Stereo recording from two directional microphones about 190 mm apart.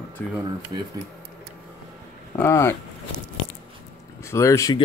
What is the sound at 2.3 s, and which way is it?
Speech, 15° left (ahead or behind).